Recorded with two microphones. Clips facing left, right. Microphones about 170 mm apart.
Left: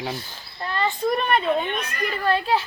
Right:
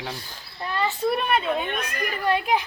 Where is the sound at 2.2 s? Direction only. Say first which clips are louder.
Left 1 dB; 15° right (ahead or behind).